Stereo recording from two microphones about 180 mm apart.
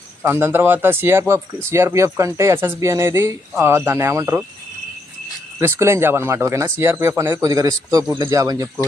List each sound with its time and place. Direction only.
0.2 s speech: 10° right (ahead or behind)
5.5 s speech: 15° right (ahead or behind)